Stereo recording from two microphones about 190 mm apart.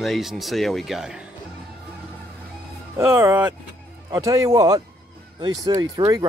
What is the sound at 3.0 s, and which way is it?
A man's voice, 15° right (ahead or behind).